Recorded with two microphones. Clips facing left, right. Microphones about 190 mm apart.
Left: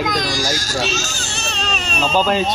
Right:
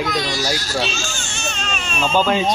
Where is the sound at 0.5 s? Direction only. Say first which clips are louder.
Left 1 dB; 45° left (ahead or behind).